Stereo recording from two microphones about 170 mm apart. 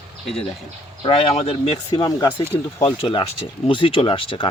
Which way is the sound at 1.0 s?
35° left (ahead or behind).